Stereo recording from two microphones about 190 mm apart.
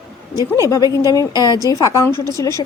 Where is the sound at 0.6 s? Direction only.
15° left (ahead or behind).